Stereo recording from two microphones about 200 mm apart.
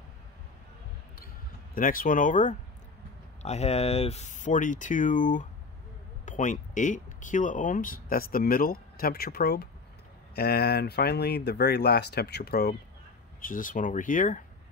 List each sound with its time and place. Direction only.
1.8 s speech: 45° left (ahead or behind)